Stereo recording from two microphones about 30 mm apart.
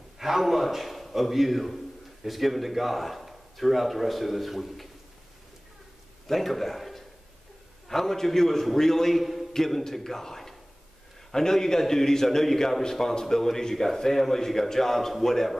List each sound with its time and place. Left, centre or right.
0.2 s a man's voice: centre
6.2 s a man's voice: centre
9.2 s a sound: centre
9.7 s a man's voice: centre